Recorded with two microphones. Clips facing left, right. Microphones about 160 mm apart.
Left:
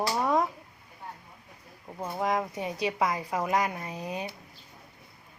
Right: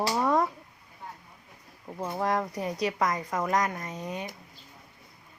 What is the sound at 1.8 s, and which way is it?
A woman's voice, centre (ahead or behind).